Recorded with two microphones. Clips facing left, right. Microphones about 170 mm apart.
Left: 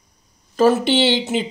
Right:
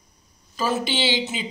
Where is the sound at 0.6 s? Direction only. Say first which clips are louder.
Left 9 dB; 65° left (ahead or behind).